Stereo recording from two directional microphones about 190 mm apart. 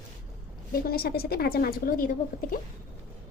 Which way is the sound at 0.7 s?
55° left (ahead or behind).